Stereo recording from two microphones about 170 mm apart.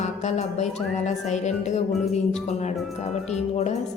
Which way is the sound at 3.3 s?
40° left (ahead or behind).